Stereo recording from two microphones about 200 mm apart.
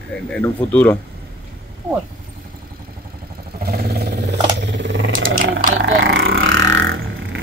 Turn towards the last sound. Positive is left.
turn(degrees=-70)  # may be behind; listen again after turning